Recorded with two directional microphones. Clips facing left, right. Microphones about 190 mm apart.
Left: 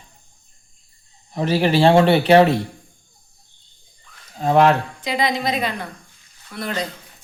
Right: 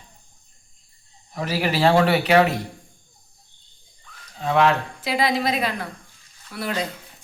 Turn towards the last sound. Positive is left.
turn(degrees=-5)  # may be behind; listen again after turning